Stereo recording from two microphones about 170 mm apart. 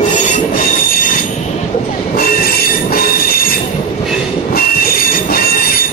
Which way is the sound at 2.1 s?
60° left (ahead or behind).